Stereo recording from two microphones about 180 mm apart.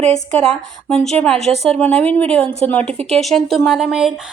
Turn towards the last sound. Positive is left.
turn(degrees=0)  # may be behind; listen again after turning